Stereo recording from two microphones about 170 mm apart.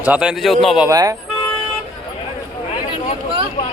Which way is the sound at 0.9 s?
20° right (ahead or behind).